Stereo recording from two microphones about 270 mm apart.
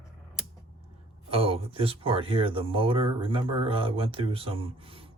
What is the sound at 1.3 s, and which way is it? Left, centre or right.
Speech, right.